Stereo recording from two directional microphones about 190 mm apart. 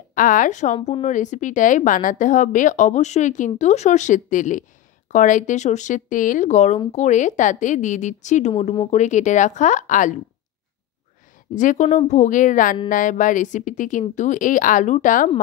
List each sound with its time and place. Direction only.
0.1 s a woman's voice: 45° left (ahead or behind)
11.5 s a woman's voice: 40° left (ahead or behind)